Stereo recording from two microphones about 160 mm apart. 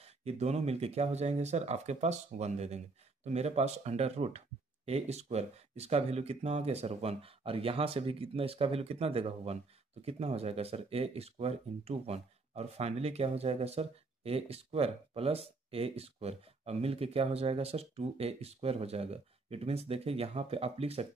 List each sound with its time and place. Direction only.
0.0 s speech: 40° right (ahead or behind)